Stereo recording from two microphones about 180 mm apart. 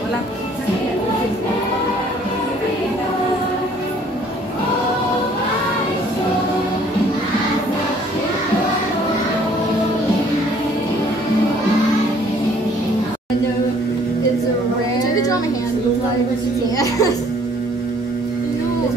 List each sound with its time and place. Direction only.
16.7 s music: 20° left (ahead or behind)